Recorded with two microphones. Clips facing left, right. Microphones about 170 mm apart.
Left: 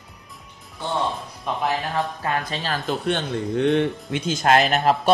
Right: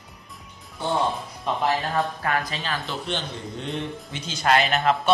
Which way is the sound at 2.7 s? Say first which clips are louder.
Left 8 dB; 50° left (ahead or behind).